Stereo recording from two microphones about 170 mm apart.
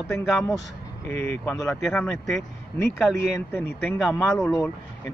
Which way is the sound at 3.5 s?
15° left (ahead or behind).